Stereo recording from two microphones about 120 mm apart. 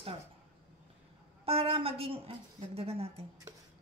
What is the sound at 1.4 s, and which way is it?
A woman's voice, 50° right (ahead or behind).